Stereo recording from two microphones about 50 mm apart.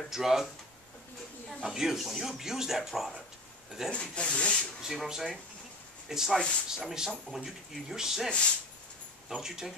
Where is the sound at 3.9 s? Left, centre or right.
Left.